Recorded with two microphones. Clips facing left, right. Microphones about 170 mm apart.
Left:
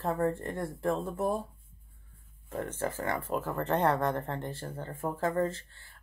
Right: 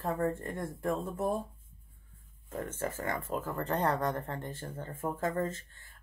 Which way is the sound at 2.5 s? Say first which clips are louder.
Left 2 dB; 35° left (ahead or behind).